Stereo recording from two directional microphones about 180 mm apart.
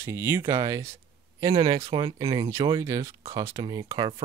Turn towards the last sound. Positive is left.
turn(degrees=-25)  # may be behind; listen again after turning